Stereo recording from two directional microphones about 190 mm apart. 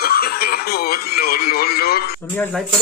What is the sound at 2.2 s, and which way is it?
Speech, 10° left (ahead or behind).